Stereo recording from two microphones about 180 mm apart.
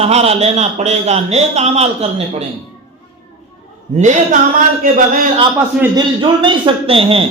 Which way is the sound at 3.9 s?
40° right (ahead or behind).